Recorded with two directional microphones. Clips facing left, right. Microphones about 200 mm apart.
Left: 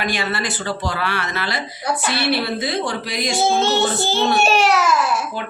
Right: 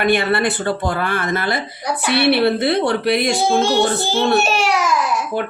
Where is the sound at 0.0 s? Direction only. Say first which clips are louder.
Right 7 dB; 60° right (ahead or behind).